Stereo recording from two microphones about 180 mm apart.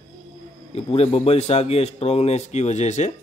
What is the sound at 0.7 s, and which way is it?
Speech, 35° left (ahead or behind).